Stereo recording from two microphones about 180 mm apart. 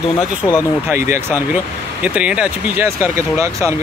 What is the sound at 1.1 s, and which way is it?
Speech, 15° right (ahead or behind).